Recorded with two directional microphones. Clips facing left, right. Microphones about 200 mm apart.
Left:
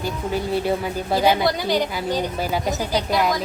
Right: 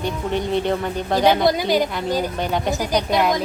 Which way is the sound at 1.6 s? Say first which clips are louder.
Right 2 dB; 15° right (ahead or behind).